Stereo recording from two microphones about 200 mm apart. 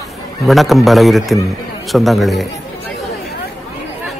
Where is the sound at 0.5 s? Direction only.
Centre (ahead or behind).